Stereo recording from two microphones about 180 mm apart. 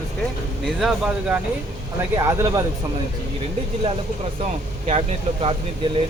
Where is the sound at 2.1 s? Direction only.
15° right (ahead or behind).